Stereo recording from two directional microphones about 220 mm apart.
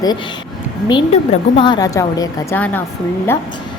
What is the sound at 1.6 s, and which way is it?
A woman's voice, 20° left (ahead or behind).